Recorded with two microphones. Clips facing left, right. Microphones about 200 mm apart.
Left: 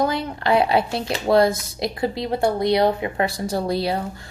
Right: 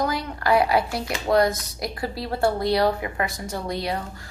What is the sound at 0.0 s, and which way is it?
A woman's voice, 25° left (ahead or behind).